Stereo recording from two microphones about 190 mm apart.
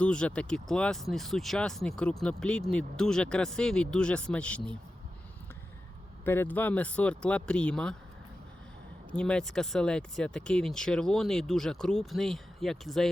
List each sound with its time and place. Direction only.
0.0 s speech: 5° left (ahead or behind)
6.2 s speech: 10° left (ahead or behind)
9.1 s speech: 5° left (ahead or behind)